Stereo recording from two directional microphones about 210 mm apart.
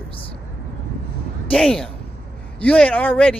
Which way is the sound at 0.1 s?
25° left (ahead or behind).